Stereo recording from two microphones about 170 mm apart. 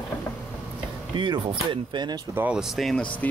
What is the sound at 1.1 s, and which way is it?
Speech, 30° right (ahead or behind).